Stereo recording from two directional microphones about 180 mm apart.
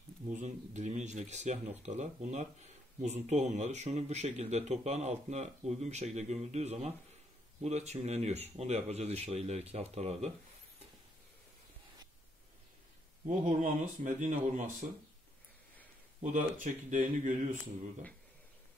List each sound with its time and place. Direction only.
0.3 s speech: 40° right (ahead or behind)
13.3 s speech: 45° right (ahead or behind)
16.2 s speech: 45° right (ahead or behind)